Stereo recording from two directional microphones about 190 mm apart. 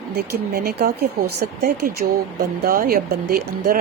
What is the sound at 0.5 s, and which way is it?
Speech, 55° right (ahead or behind).